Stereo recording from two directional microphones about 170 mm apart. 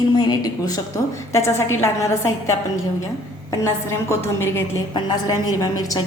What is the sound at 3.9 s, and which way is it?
A woman's voice, 15° left (ahead or behind).